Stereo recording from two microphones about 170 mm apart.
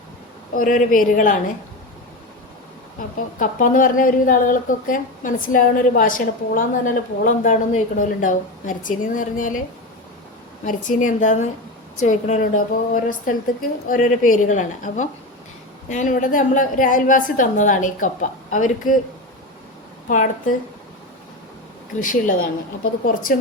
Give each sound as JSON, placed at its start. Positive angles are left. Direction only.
{"t": 0.5, "sound": "a woman's voice", "side_deg": 50}
{"t": 3.3, "sound": "a woman's voice", "side_deg": 50}
{"t": 10.7, "sound": "a woman's voice", "side_deg": 50}
{"t": 20.1, "sound": "a woman's voice", "side_deg": 50}
{"t": 22.0, "sound": "a woman's voice", "side_deg": 50}